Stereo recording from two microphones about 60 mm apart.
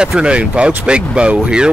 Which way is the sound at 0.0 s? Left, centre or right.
Centre.